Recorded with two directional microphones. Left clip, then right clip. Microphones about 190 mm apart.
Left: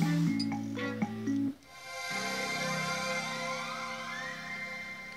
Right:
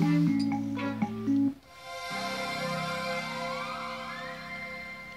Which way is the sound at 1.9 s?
15° left (ahead or behind).